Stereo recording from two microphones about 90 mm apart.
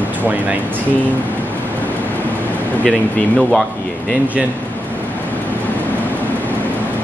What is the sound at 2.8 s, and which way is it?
Speech, 15° left (ahead or behind).